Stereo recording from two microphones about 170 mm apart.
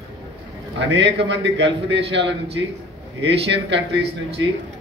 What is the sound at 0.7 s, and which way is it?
Speech, 90° right.